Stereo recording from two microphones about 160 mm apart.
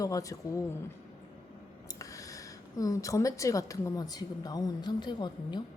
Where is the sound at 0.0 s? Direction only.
20° left (ahead or behind).